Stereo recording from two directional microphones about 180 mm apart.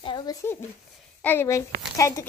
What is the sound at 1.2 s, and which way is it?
A child's voice, 10° left (ahead or behind).